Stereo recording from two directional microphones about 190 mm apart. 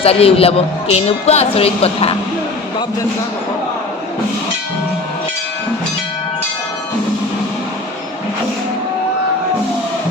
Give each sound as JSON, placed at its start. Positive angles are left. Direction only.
{"t": 0.0, "sound": "a man's voice", "side_deg": 30}